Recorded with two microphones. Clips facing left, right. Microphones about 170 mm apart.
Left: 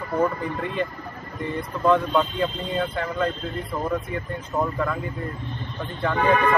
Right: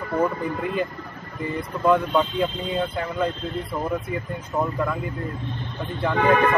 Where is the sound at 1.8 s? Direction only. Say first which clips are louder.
Even; 5° right (ahead or behind).